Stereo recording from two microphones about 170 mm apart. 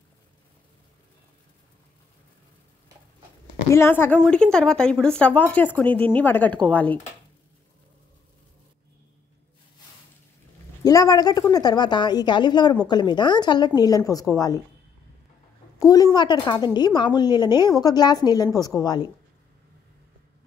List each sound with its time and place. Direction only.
3.6 s speech: 15° left (ahead or behind)
10.8 s a woman's voice: 20° left (ahead or behind)
15.8 s a woman's voice: 20° left (ahead or behind)